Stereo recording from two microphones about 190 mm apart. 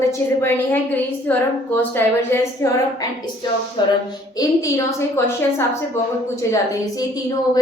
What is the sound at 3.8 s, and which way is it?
A woman's voice, 25° left (ahead or behind).